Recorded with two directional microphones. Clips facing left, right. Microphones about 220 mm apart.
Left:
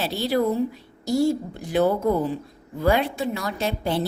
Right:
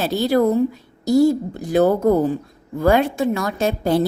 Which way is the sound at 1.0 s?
40° right (ahead or behind).